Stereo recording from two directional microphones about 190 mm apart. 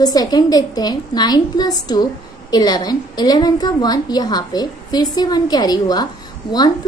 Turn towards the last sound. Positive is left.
turn(degrees=25)  # may be behind; listen again after turning